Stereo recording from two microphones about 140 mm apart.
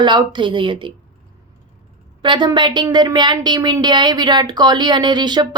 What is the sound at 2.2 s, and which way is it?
A woman's voice, 35° right (ahead or behind).